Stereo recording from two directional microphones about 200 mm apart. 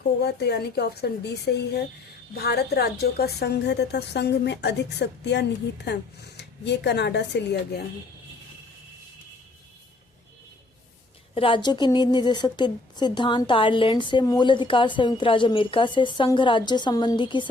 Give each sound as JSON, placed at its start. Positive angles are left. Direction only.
{"t": 0.0, "sound": "a woman's voice", "side_deg": 55}
{"t": 11.3, "sound": "a woman's voice", "side_deg": 25}